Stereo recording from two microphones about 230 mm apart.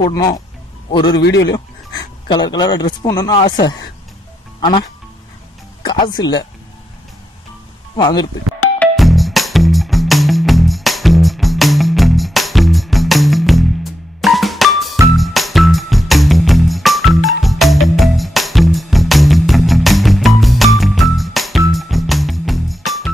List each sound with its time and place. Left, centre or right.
0.0 s a man's voice: centre
1.1 s a man's voice: left
1.5 s speech: centre
4.6 s speech: centre
5.9 s speech: centre
7.9 s speech: centre
8.7 s music: centre